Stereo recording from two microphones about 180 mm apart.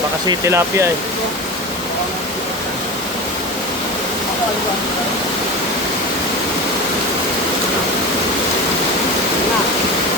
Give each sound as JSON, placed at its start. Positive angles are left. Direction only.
{"t": 0.3, "sound": "speech", "side_deg": -15}